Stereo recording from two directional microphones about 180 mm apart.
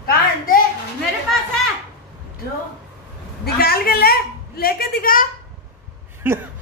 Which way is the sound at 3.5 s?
60° left (ahead or behind).